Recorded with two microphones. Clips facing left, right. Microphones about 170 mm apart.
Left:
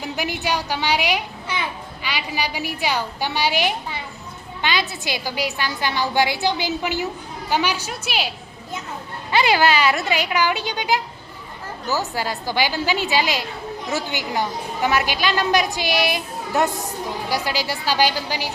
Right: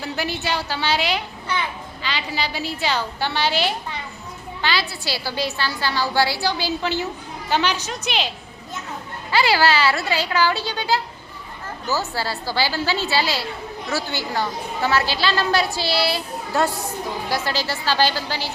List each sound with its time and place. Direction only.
0.0 s a woman's voice: 15° left (ahead or behind)
9.3 s a woman's voice: 20° left (ahead or behind)